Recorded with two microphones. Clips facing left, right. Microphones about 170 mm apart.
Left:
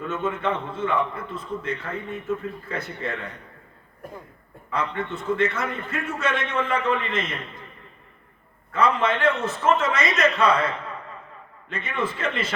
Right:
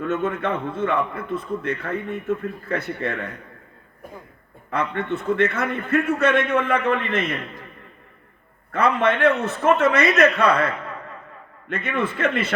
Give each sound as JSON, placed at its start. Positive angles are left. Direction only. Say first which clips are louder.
{"t": 0.0, "sound": "a man's voice", "louder": "right 3 dB", "side_deg": -55}
{"t": 4.0, "sound": "speech", "louder": "left 1 dB", "side_deg": 0}
{"t": 4.7, "sound": "a man's voice", "louder": "right 3 dB", "side_deg": -60}
{"t": 8.7, "sound": "a man's voice", "louder": "right 2 dB", "side_deg": -60}
{"t": 11.7, "sound": "a man's voice", "louder": "right 3 dB", "side_deg": -60}